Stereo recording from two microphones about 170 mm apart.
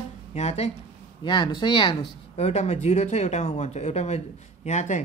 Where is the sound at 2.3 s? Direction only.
40° left (ahead or behind).